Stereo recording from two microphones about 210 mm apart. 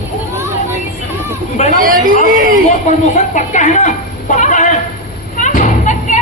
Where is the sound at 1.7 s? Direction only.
40° right (ahead or behind).